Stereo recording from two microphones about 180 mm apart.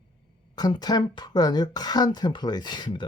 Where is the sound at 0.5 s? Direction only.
20° left (ahead or behind).